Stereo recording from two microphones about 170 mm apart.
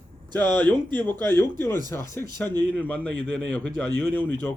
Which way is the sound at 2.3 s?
25° right (ahead or behind).